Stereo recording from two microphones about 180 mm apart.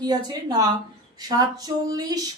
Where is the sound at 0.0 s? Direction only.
20° right (ahead or behind).